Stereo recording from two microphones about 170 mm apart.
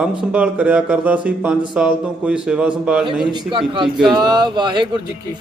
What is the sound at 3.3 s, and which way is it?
Speech, 25° right (ahead or behind).